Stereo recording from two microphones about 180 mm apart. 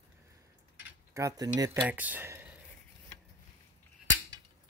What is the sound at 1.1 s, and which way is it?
Cutlery, 15° right (ahead or behind).